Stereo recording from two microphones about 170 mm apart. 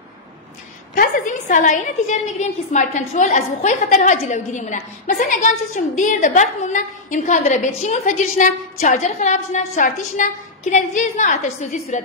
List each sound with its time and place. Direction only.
0.9 s a woman's voice: 50° left (ahead or behind)